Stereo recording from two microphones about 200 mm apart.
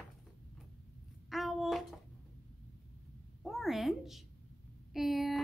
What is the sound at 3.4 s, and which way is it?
A woman's voice, centre (ahead or behind).